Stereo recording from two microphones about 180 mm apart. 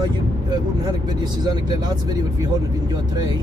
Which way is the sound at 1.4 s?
25° right (ahead or behind).